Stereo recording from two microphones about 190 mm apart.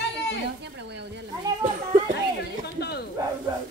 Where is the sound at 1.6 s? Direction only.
45° right (ahead or behind).